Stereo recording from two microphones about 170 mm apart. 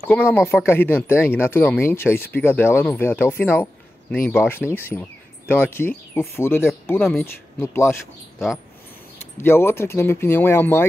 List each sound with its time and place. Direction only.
0.1 s speech: 10° left (ahead or behind)